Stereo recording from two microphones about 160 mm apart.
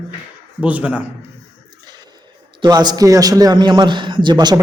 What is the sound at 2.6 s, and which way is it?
A man's voice, 25° right (ahead or behind).